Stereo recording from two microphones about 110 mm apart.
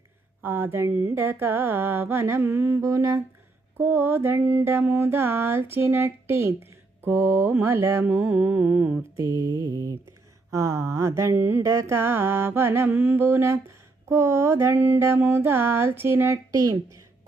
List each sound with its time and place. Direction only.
0.4 s mantra: 20° right (ahead or behind)
9.1 s mantra: 30° right (ahead or behind)